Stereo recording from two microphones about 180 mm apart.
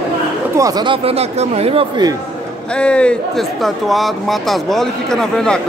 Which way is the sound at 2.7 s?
5° left (ahead or behind).